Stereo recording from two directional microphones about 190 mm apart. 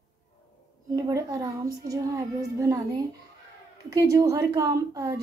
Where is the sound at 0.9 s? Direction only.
20° right (ahead or behind).